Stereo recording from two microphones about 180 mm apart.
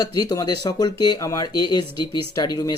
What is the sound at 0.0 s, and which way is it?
Speech, 20° left (ahead or behind).